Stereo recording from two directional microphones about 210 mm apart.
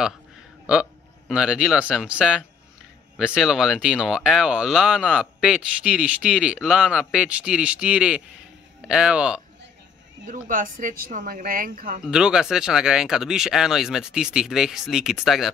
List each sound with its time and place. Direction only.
1.3 s speech: 5° right (ahead or behind)
10.2 s speech: 40° right (ahead or behind)
12.1 s speech: 5° right (ahead or behind)